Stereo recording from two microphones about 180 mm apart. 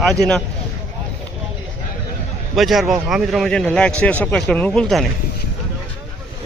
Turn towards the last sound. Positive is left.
turn(degrees=0)  # may be behind; listen again after turning